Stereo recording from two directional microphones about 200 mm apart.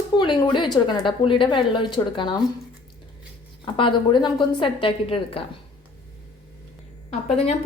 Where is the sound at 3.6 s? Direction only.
25° left (ahead or behind).